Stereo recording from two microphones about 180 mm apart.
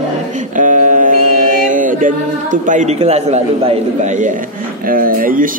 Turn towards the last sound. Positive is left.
turn(degrees=-50)  # may be behind; listen again after turning